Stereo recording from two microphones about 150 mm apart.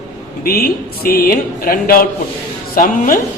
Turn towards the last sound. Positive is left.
turn(degrees=65)  # may be behind; listen again after turning